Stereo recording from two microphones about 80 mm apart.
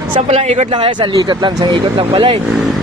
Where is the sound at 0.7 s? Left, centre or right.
Right.